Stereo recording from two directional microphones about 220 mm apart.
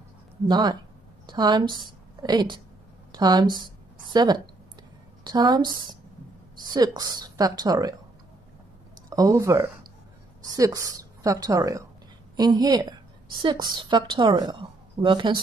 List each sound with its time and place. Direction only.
0.5 s a woman's voice: 20° right (ahead or behind)
9.1 s a woman's voice: 15° right (ahead or behind)